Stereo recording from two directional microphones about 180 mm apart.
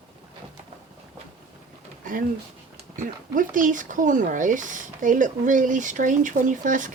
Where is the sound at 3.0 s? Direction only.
45° right (ahead or behind).